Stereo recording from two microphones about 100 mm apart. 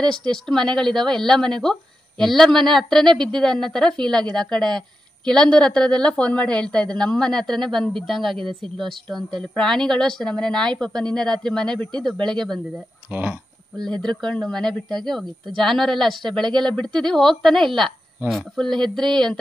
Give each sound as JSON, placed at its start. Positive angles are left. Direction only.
{"t": 0.3, "sound": "a woman's voice", "side_deg": 5}
{"t": 13.1, "sound": "speech", "side_deg": -20}
{"t": 13.7, "sound": "speech", "side_deg": 5}